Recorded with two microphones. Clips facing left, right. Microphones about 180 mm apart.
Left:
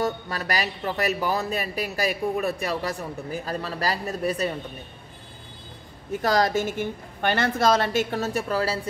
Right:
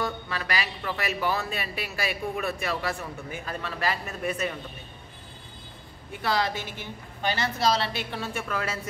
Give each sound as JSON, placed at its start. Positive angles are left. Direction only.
{"t": 0.0, "sound": "a man's voice", "side_deg": 40}
{"t": 6.1, "sound": "a woman's voice", "side_deg": 40}